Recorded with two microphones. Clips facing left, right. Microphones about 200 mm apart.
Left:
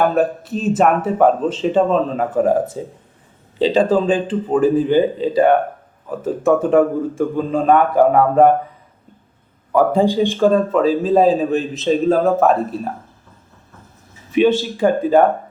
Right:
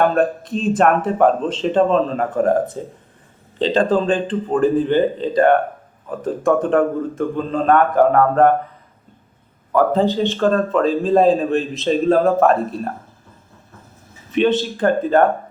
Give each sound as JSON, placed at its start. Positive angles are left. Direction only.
{"t": 0.0, "sound": "a man's voice", "side_deg": 5}
{"t": 9.7, "sound": "a man's voice", "side_deg": 10}
{"t": 14.3, "sound": "speech", "side_deg": 10}